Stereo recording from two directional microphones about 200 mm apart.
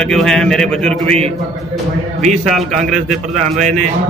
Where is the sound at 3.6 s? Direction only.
35° right (ahead or behind).